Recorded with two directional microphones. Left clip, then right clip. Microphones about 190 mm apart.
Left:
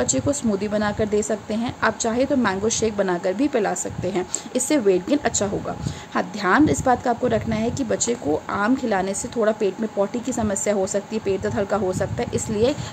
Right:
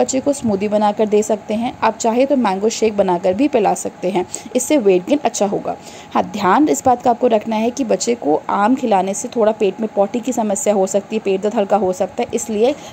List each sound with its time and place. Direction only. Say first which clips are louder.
0.0 s a woman's voice: right 6 dB; 20° right (ahead or behind)